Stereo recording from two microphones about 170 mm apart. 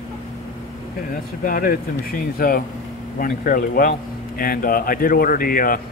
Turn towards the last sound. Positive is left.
turn(degrees=55)  # may be behind; listen again after turning